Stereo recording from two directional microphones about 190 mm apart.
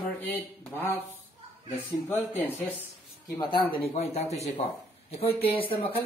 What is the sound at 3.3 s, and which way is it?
Speech, 25° left (ahead or behind).